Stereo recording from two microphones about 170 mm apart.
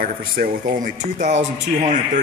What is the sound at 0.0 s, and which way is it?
Speech, 55° right (ahead or behind).